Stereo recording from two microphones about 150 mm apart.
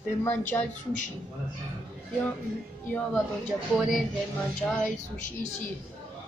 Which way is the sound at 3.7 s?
Centre (ahead or behind).